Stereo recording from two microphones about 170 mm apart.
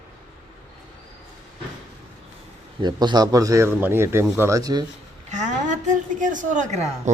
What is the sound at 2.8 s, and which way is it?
Speech, 25° right (ahead or behind).